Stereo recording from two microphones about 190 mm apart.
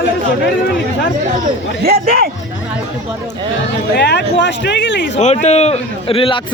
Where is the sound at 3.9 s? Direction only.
60° left (ahead or behind).